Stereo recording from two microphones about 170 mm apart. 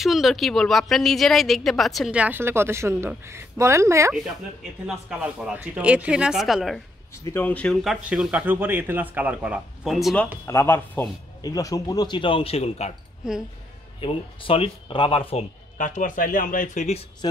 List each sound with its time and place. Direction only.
0.0 s speech: centre (ahead or behind); by 4.1 s 15° right (ahead or behind)
4.8 s speech: 5° right (ahead or behind)
7.2 s speech: 10° left (ahead or behind)
10.4 s speech: 15° left (ahead or behind); by 12.9 s 40° left (ahead or behind)
13.2 s speech: 5° right (ahead or behind)
13.9 s speech: 30° left (ahead or behind)
15.8 s speech: 50° left (ahead or behind)
17.2 s speech: 25° left (ahead or behind)